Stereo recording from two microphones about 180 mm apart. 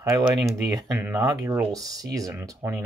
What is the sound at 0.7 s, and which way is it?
Speech, 20° right (ahead or behind).